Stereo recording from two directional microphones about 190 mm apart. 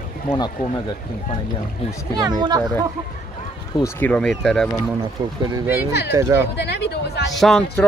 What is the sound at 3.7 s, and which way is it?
Speech, 15° left (ahead or behind).